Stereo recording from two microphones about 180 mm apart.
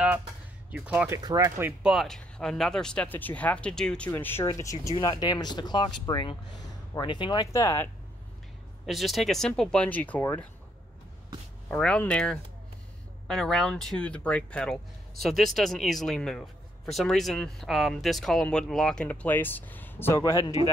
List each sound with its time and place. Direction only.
0.7 s speech: 5° right (ahead or behind)
1.2 s speech: 20° right (ahead or behind)
1.8 s a man's voice: centre (ahead or behind); by 7.9 s 15° left (ahead or behind)
8.8 s a man's voice: centre (ahead or behind)
11.7 s a man's voice: 10° left (ahead or behind)